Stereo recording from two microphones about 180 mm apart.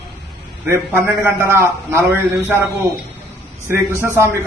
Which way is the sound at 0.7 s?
15° right (ahead or behind).